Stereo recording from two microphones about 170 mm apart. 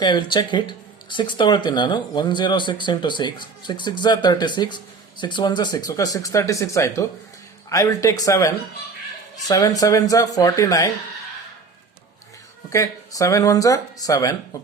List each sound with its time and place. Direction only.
0.0 s speech: 25° left (ahead or behind)
12.7 s speech: 20° left (ahead or behind)